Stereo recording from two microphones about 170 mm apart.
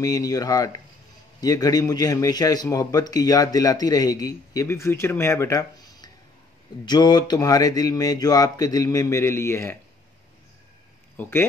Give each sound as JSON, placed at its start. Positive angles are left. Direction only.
{"t": 0.0, "sound": "a man's voice", "side_deg": 20}
{"t": 11.1, "sound": "speech", "side_deg": 15}